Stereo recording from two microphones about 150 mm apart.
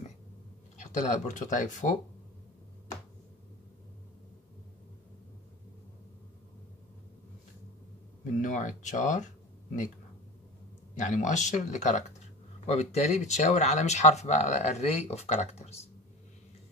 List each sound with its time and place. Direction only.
0.7 s speech: 55° left (ahead or behind)
8.2 s speech: 55° left (ahead or behind)
11.0 s speech: 55° left (ahead or behind)